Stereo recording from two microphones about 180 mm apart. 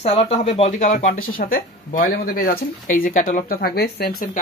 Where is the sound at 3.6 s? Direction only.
60° left (ahead or behind).